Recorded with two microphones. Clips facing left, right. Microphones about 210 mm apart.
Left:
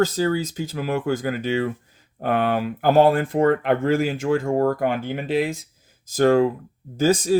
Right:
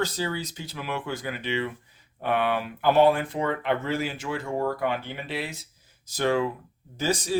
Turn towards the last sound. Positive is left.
turn(degrees=45)  # may be behind; listen again after turning